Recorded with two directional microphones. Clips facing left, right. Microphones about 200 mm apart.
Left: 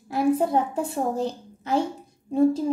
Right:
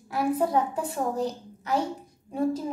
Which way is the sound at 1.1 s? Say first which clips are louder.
Left 2 dB; 25° left (ahead or behind).